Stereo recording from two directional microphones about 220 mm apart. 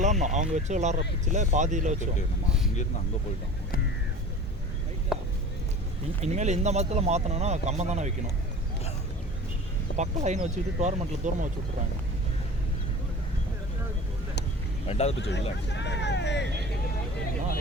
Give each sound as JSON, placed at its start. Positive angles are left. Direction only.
{"t": 0.0, "sound": "speech", "side_deg": -35}
{"t": 5.1, "sound": "a sound", "side_deg": 0}
{"t": 6.2, "sound": "speech", "side_deg": -30}
{"t": 10.0, "sound": "speech", "side_deg": -30}
{"t": 14.8, "sound": "speech", "side_deg": 30}
{"t": 15.2, "sound": "speech", "side_deg": 50}